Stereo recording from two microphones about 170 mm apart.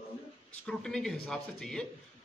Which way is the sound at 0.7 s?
5° left (ahead or behind).